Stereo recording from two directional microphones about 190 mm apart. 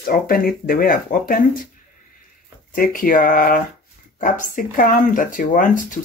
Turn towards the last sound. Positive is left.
turn(degrees=45)  # may be behind; listen again after turning